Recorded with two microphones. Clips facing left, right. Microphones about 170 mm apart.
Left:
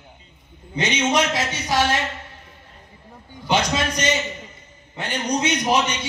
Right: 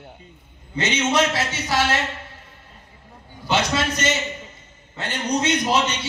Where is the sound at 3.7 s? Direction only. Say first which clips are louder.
Even; 15° left (ahead or behind).